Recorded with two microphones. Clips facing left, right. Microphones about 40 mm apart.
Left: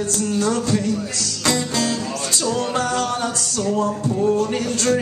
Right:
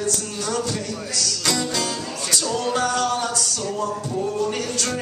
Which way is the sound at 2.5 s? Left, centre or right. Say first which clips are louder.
Right 1 dB; left.